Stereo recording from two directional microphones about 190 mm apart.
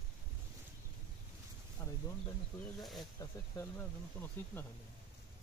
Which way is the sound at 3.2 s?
10° left (ahead or behind).